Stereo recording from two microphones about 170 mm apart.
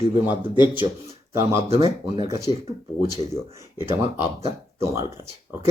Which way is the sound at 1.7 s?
20° right (ahead or behind).